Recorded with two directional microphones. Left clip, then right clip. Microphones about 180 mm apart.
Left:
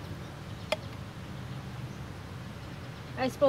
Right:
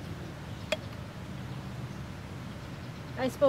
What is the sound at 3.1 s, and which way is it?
Speech, 15° right (ahead or behind).